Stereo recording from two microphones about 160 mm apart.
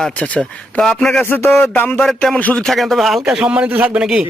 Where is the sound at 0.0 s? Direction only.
5° left (ahead or behind).